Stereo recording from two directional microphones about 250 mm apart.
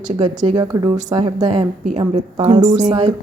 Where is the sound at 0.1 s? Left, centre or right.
Centre.